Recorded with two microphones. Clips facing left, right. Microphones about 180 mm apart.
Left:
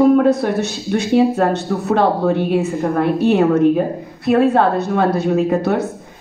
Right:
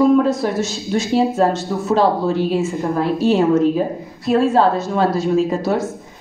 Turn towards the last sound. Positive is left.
turn(degrees=65)  # may be behind; listen again after turning